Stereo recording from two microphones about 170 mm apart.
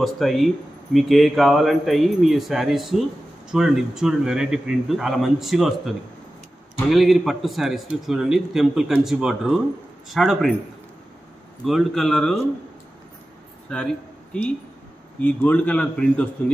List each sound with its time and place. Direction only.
0.0 s a man's voice: centre (ahead or behind)
11.6 s a man's voice: centre (ahead or behind)
13.7 s a man's voice: 5° left (ahead or behind)